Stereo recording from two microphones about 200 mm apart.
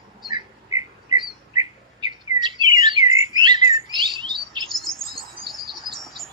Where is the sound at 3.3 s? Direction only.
20° right (ahead or behind).